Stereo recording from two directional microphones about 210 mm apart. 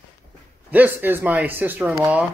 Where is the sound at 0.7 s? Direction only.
10° right (ahead or behind).